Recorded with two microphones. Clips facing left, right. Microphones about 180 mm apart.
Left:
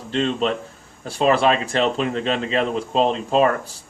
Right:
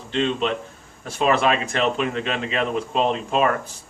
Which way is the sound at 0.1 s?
40° left (ahead or behind).